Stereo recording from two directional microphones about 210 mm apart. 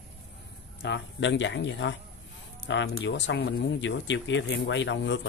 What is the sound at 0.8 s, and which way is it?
Speech, 55° left (ahead or behind).